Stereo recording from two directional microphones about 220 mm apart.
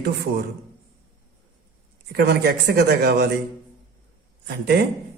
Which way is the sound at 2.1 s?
45° right (ahead or behind).